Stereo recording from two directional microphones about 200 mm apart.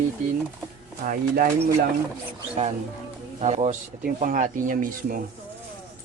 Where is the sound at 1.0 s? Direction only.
45° right (ahead or behind).